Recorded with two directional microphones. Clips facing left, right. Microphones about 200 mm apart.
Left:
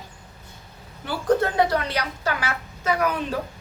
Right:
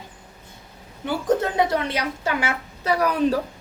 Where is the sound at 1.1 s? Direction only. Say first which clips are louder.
Even; 20° right (ahead or behind); by 3.4 s 35° right (ahead or behind).